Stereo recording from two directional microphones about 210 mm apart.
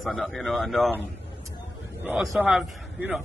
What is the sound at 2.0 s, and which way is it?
Speech, 5° right (ahead or behind).